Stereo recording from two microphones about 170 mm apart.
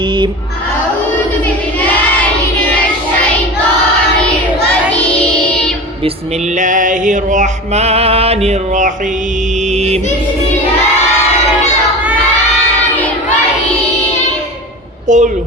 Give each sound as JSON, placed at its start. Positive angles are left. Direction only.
{"t": 6.6, "sound": "music", "side_deg": -50}
{"t": 15.0, "sound": "speech", "side_deg": -45}